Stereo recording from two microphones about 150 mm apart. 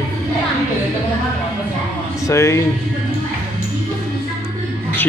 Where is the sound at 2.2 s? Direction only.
20° left (ahead or behind).